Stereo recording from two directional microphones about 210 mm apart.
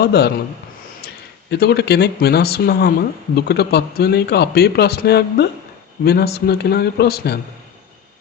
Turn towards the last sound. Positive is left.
turn(degrees=50)  # may be behind; listen again after turning